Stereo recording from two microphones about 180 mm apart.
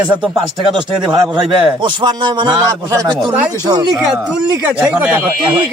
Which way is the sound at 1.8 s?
25° right (ahead or behind).